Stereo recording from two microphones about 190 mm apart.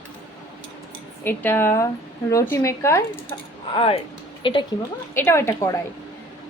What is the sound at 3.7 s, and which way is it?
Speech, 30° left (ahead or behind).